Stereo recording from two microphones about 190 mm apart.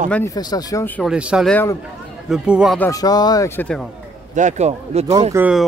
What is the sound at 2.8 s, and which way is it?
Speech, 15° left (ahead or behind).